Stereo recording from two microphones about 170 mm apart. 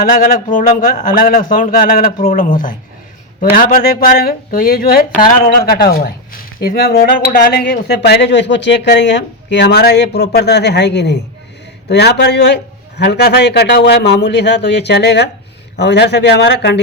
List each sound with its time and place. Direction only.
0.0 s a man's voice: 55° left (ahead or behind); by 12.5 s 90° left
13.0 s speech: 75° left (ahead or behind)